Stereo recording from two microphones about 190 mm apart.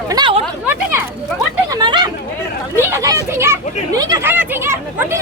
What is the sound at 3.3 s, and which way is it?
Speech, 15° right (ahead or behind).